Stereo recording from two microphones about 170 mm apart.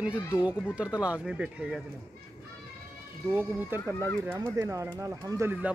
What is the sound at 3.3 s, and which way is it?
Speech, 10° right (ahead or behind).